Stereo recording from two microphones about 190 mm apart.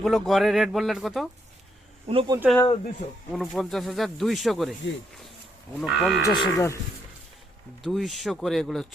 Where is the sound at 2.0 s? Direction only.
25° right (ahead or behind).